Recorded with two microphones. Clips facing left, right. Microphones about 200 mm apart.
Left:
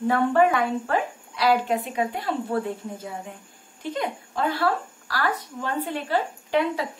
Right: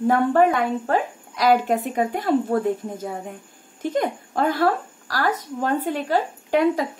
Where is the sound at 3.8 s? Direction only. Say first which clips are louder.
Right 5 dB; 45° right (ahead or behind).